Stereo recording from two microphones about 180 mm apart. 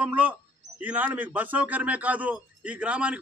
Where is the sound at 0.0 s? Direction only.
10° right (ahead or behind).